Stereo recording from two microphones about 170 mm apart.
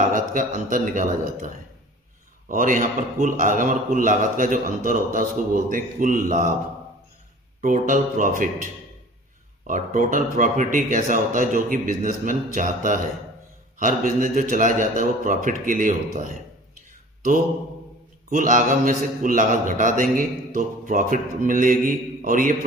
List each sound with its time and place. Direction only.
0.1 s a man's voice: 50° right (ahead or behind)
7.6 s a man's voice: 50° right (ahead or behind)
9.7 s a man's voice: 50° right (ahead or behind)
18.3 s a man's voice: 50° right (ahead or behind)